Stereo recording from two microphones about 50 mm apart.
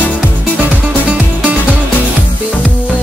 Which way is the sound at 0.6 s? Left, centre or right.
Right.